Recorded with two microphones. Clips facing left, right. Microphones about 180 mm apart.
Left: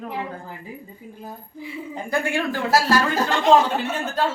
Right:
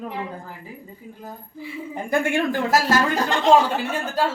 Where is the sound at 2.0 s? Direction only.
20° right (ahead or behind).